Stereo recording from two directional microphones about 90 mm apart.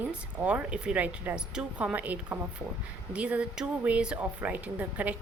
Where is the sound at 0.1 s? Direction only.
15° right (ahead or behind).